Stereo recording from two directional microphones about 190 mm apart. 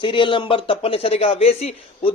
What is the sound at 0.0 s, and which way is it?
Speech, 25° left (ahead or behind).